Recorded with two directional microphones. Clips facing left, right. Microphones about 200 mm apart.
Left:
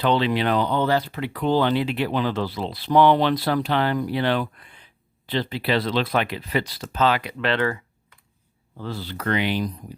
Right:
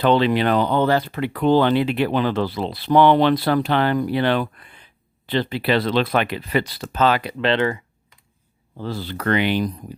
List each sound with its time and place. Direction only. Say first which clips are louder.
0.0 s speech: right 4 dB; 50° right (ahead or behind)
7.2 s speech: right 4 dB; 30° right (ahead or behind)
8.8 s speech: right 4 dB; 40° right (ahead or behind)
9.0 s speech: right 4 dB; 65° right (ahead or behind)